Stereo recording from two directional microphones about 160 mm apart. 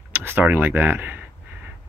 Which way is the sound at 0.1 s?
15° right (ahead or behind).